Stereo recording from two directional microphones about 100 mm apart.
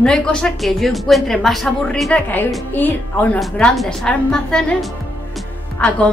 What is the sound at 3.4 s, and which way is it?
Speech, 5° left (ahead or behind).